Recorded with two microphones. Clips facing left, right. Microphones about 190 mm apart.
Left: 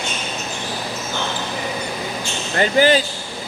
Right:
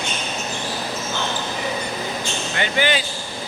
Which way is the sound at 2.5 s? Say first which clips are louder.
Left 7 dB; 40° left (ahead or behind).